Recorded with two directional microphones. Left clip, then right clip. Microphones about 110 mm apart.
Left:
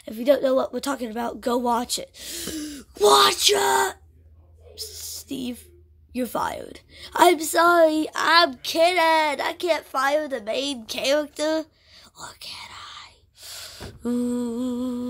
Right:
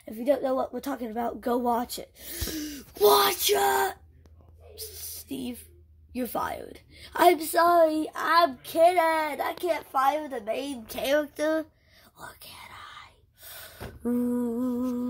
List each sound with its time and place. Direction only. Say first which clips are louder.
0.0 s speech: left 6 dB; 50° left (ahead or behind)
0.7 s a woman's voice: left 4 dB; 35° left (ahead or behind)
4.7 s a sound: left 6 dB; 40° left (ahead or behind)
6.1 s a woman's voice: left 4 dB; 40° left (ahead or behind)
10.3 s a woman's voice: left 5 dB; 70° left (ahead or behind)
10.9 s whispering: left 2 dB; 15° left (ahead or behind)